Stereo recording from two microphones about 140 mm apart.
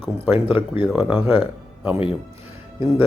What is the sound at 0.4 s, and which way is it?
Speech, 35° left (ahead or behind).